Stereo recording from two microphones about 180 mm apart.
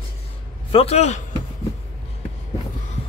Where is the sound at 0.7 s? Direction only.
35° left (ahead or behind).